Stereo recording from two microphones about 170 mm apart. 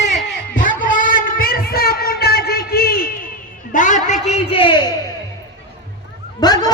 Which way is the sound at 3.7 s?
50° left (ahead or behind).